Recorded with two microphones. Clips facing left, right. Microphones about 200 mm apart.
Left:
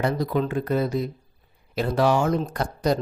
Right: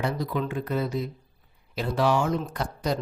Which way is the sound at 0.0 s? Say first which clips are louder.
Left 4 dB; 45° left (ahead or behind).